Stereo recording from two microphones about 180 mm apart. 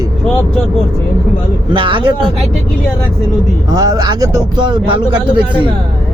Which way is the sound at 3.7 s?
20° right (ahead or behind).